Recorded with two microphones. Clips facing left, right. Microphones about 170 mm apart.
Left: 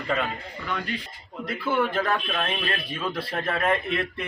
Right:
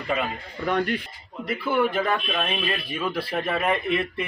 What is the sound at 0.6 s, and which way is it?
Speech, 50° right (ahead or behind).